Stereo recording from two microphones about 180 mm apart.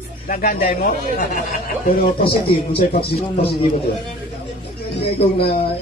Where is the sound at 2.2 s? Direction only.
30° left (ahead or behind).